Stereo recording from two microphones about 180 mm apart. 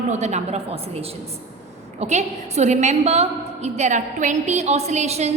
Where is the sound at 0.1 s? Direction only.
40° right (ahead or behind).